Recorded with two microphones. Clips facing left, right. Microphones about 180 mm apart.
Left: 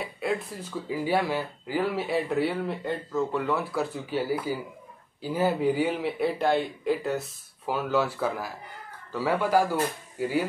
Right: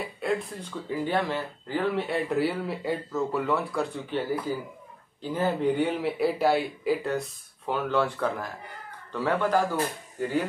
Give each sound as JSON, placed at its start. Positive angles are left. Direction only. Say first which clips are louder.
{"t": 0.0, "sound": "speech", "louder": "right 1 dB", "side_deg": 0}